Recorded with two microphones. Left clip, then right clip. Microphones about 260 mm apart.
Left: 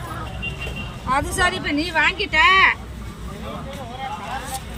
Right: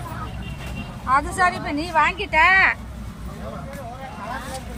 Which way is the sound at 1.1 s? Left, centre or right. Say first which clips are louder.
Right 1 dB; centre.